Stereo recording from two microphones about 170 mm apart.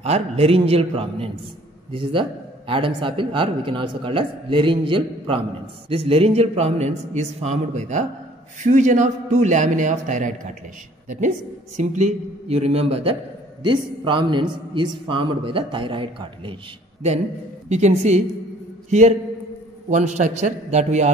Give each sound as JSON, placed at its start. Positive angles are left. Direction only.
{"t": 0.0, "sound": "a man's voice", "side_deg": -35}
{"t": 17.6, "sound": "a man's voice", "side_deg": -40}